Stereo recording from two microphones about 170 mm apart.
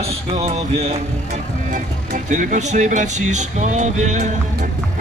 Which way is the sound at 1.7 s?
50° right (ahead or behind).